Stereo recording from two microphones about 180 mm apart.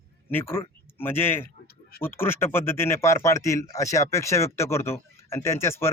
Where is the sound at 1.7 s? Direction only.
60° left (ahead or behind).